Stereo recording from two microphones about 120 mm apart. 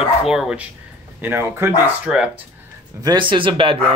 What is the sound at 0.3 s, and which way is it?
Speech, 5° right (ahead or behind).